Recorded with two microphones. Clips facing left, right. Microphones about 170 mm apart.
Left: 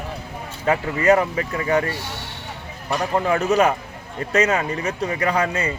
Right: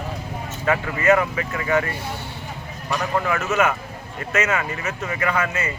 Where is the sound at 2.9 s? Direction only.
30° left (ahead or behind).